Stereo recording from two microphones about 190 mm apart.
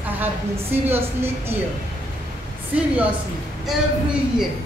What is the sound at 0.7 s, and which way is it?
Speech, 10° right (ahead or behind).